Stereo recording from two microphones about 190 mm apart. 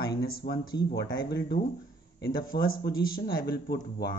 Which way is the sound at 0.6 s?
20° left (ahead or behind).